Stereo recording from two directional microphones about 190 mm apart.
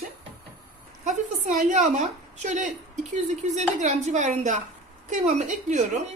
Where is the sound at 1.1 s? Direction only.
40° right (ahead or behind).